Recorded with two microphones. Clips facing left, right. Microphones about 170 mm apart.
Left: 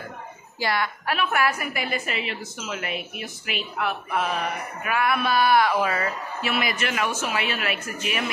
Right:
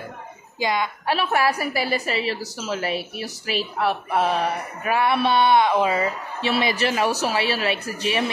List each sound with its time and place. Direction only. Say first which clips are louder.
0.6 s a woman's voice: right 2 dB; 15° right (ahead or behind)
1.0 s speech: right 3 dB; 30° right (ahead or behind)